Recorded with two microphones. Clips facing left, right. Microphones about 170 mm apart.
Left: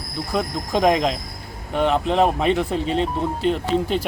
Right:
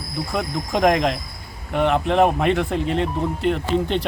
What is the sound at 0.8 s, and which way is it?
Speech, centre (ahead or behind).